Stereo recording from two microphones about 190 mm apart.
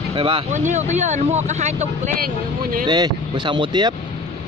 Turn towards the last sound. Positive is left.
turn(degrees=-25)  # may be behind; listen again after turning